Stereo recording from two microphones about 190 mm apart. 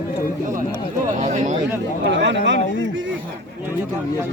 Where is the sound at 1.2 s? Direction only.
40° right (ahead or behind).